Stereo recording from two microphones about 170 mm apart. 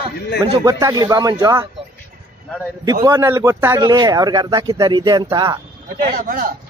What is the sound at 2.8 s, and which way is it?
A man's voice, 20° right (ahead or behind).